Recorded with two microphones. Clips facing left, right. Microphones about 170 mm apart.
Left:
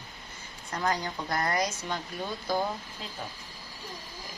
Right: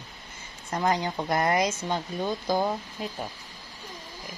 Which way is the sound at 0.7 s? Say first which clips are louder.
Right 4 dB; 20° right (ahead or behind).